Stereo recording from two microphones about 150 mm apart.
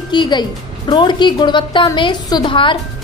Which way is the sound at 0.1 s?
30° left (ahead or behind).